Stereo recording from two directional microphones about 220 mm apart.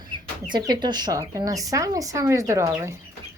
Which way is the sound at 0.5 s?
20° right (ahead or behind).